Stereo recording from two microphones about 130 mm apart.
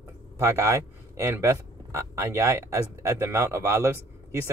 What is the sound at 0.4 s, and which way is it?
Speech, 20° right (ahead or behind).